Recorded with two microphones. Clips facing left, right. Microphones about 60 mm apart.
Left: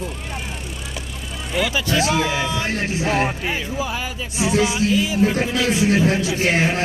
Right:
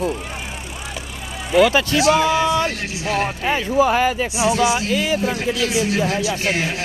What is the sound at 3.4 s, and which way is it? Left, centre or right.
Speech, right.